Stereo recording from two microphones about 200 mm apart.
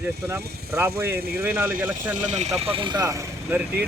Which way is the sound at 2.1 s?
35° right (ahead or behind).